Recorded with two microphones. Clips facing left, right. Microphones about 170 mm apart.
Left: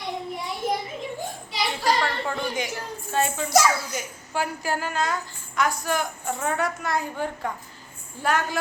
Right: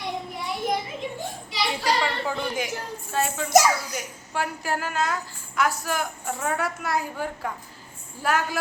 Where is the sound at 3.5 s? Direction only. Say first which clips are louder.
Right 3 dB; 15° right (ahead or behind).